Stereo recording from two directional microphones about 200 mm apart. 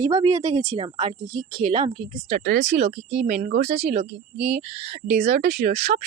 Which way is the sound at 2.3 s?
45° right (ahead or behind).